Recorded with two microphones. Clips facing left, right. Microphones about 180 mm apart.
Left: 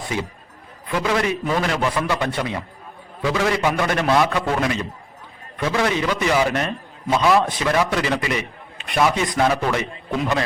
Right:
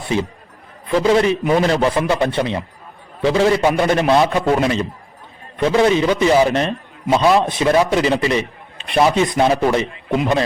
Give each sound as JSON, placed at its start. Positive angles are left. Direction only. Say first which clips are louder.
{"t": 0.9, "sound": "a man's voice", "louder": "right 7 dB", "side_deg": -25}